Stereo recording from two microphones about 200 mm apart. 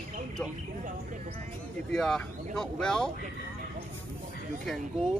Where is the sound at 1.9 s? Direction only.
Centre (ahead or behind).